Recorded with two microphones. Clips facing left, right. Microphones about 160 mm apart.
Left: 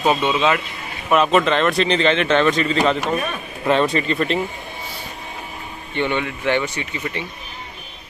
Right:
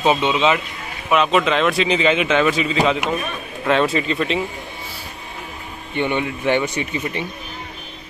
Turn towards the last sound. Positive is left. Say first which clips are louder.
# right 3 dB
turn(degrees=-15)  # may be behind; listen again after turning